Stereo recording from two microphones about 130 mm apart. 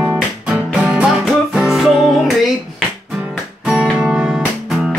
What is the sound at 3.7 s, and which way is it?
Music, 5° right (ahead or behind).